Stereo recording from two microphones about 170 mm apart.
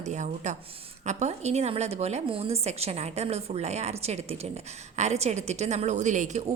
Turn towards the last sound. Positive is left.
turn(degrees=-45)  # may be behind; listen again after turning